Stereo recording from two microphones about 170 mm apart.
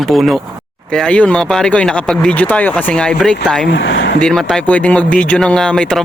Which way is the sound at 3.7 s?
85° left.